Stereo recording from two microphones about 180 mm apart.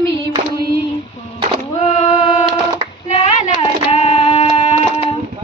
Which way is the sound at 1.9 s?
40° left (ahead or behind).